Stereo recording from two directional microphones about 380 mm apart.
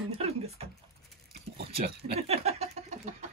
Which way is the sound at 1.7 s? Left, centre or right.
Centre.